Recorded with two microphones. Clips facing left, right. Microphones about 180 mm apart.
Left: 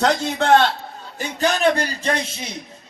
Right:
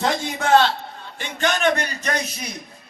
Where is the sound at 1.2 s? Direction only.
35° left (ahead or behind).